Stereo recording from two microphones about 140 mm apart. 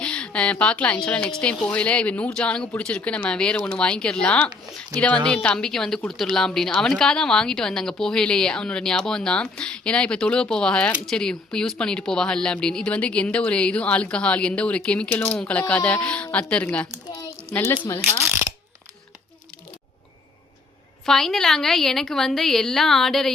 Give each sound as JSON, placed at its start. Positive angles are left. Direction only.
{"t": 0.0, "sound": "a woman's voice", "side_deg": 5}
{"t": 18.0, "sound": "mechanisms", "side_deg": -15}
{"t": 21.0, "sound": "a woman's voice", "side_deg": 5}